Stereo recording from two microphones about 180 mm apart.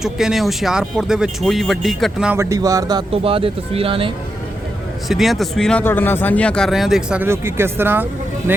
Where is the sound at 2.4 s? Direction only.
20° right (ahead or behind).